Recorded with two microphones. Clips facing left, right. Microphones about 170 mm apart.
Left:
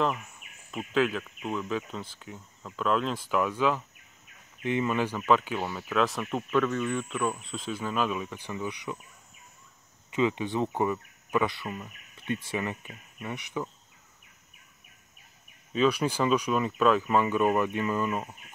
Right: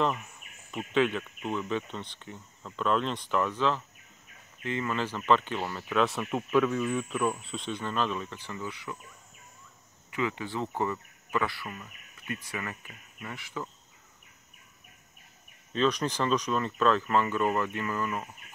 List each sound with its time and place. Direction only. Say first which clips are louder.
0.0 s speech: even; centre (ahead or behind); by 8.9 s 15° left (ahead or behind)
10.1 s speech: left 5 dB; 20° left (ahead or behind)
15.7 s speech: left 2 dB; 10° left (ahead or behind)